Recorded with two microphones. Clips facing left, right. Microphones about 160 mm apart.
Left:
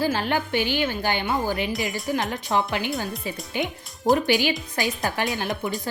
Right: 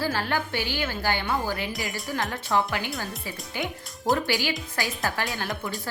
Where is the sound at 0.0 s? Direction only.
20° left (ahead or behind).